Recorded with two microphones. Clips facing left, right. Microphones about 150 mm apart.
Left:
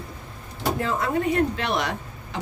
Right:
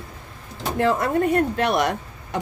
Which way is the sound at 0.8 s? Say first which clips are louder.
Right 9 dB; 65° right (ahead or behind).